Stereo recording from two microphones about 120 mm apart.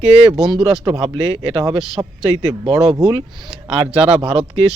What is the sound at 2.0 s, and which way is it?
Speech, 30° right (ahead or behind).